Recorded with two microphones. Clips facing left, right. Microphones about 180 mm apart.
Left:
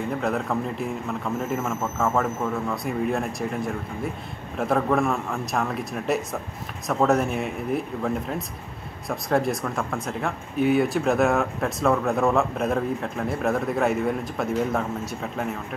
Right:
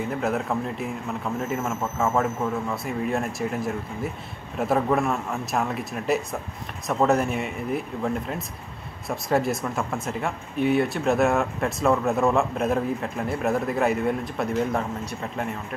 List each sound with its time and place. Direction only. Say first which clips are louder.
0.1 s speech: left 1 dB; centre (ahead or behind)